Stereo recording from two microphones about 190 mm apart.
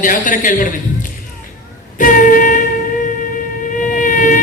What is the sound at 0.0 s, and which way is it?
Speech, 45° left (ahead or behind).